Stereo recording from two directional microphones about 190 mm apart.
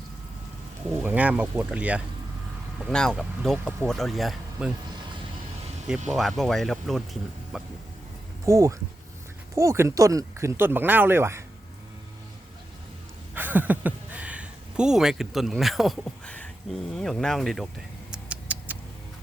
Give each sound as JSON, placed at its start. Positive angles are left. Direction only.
{"t": 1.0, "sound": "speech", "side_deg": -10}
{"t": 2.9, "sound": "speech", "side_deg": 5}
{"t": 6.1, "sound": "speech", "side_deg": 0}
{"t": 8.4, "sound": "speech", "side_deg": -15}
{"t": 13.3, "sound": "speech", "side_deg": -10}
{"t": 18.1, "sound": "cat", "side_deg": -5}